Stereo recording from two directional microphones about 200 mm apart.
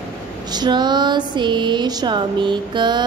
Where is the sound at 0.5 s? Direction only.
20° right (ahead or behind).